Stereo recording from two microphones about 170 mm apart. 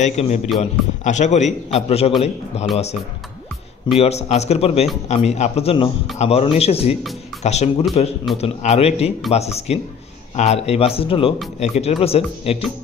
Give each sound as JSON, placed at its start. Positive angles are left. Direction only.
{"t": 0.0, "sound": "a man's voice", "side_deg": 40}
{"t": 3.9, "sound": "a man's voice", "side_deg": 40}